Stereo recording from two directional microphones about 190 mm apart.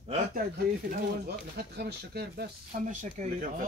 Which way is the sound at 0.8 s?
55° right (ahead or behind).